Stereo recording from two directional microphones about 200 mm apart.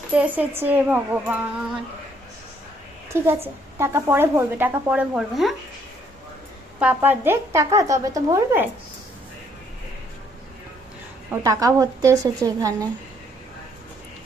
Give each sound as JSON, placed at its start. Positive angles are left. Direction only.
{"t": 0.1, "sound": "a woman's voice", "side_deg": -5}
{"t": 3.1, "sound": "a woman's voice", "side_deg": -10}
{"t": 6.7, "sound": "a woman's voice", "side_deg": -10}
{"t": 11.4, "sound": "a woman's voice", "side_deg": -15}